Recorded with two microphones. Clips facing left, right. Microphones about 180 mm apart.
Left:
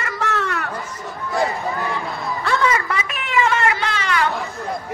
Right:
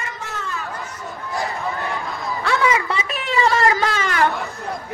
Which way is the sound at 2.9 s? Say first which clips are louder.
Even; 30° right (ahead or behind).